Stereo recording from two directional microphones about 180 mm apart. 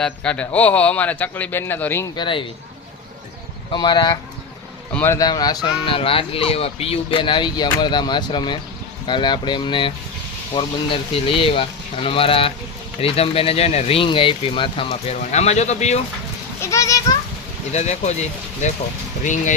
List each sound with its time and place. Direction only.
0.0 s a man's voice: 5° left (ahead or behind)
2.1 s speech: 25° left (ahead or behind)
3.7 s speech: 25° left (ahead or behind)
16.6 s a man's voice: 15° left (ahead or behind)
17.7 s speech: 40° left (ahead or behind)